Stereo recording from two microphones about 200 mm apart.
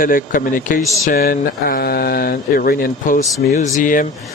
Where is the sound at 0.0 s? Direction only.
45° left (ahead or behind).